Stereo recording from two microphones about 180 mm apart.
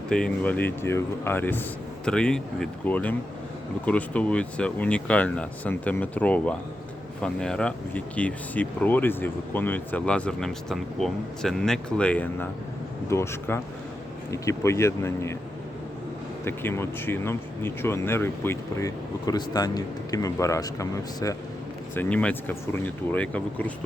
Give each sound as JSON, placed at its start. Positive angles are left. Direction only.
{"t": 0.1, "sound": "speech", "side_deg": 5}
{"t": 16.4, "sound": "speech", "side_deg": 15}
{"t": 21.9, "sound": "speech", "side_deg": 5}